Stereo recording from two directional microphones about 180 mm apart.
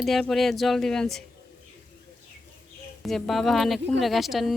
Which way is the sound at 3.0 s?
Centre (ahead or behind).